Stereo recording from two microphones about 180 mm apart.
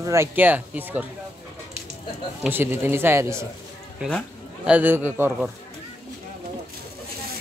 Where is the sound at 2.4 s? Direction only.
10° right (ahead or behind).